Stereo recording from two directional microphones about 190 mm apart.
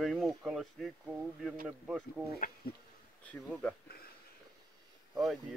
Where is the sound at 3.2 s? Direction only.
5° left (ahead or behind).